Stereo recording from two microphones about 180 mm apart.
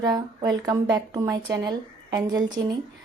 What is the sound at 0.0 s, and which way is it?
Speech, 20° right (ahead or behind).